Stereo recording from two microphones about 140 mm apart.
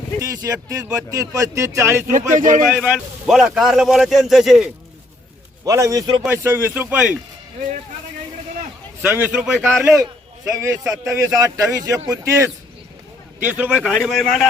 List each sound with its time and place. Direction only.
0.2 s a man's voice: 25° right (ahead or behind)
2.1 s speech: 65° right (ahead or behind)
2.7 s speech: 10° right (ahead or behind)
5.6 s a man's voice: 25° right (ahead or behind)
9.0 s a man's voice: 15° right (ahead or behind)
9.6 s a man's voice: 15° right (ahead or behind)
13.4 s speech: 10° right (ahead or behind)
13.8 s speech: centre (ahead or behind)